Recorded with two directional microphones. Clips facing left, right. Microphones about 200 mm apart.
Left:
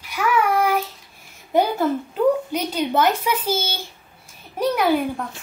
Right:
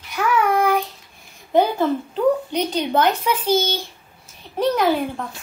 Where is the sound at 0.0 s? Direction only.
10° left (ahead or behind).